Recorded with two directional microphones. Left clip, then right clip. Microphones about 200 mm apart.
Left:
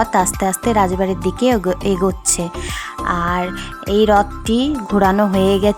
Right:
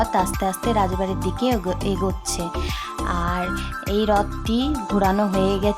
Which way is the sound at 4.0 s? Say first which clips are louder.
Left 7 dB; 25° left (ahead or behind).